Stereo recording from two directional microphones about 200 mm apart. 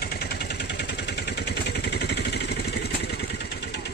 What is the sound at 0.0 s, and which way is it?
Vehicle, 50° left (ahead or behind).